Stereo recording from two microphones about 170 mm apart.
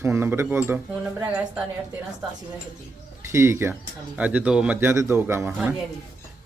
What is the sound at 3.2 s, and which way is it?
A man's voice, 15° right (ahead or behind).